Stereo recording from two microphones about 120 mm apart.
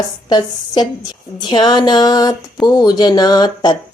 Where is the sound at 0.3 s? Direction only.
35° left (ahead or behind).